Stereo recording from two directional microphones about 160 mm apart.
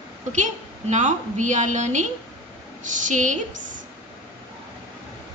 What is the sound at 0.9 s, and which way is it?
A woman's voice, 50° right (ahead or behind).